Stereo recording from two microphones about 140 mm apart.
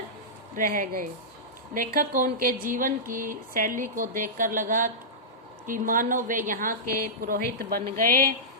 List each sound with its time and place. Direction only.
0.5 s speech: 75° right (ahead or behind)